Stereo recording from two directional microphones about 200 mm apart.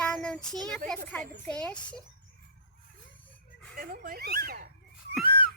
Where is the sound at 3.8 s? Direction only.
45° right (ahead or behind).